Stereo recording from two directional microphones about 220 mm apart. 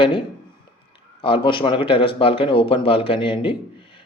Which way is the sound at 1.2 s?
25° left (ahead or behind).